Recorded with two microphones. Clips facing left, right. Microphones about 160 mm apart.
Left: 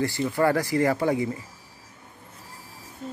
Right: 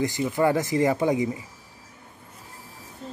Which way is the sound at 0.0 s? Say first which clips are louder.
Even; 15° right (ahead or behind).